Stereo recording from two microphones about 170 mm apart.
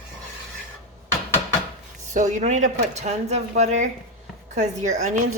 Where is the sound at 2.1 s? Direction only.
45° right (ahead or behind).